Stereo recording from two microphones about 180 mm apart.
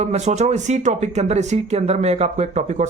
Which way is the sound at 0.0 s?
40° right (ahead or behind).